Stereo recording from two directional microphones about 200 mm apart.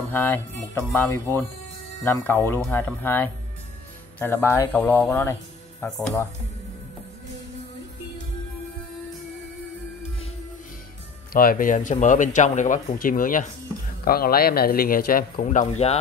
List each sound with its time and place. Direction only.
0.1 s speech: 10° left (ahead or behind)
11.3 s a man's voice: 45° left (ahead or behind)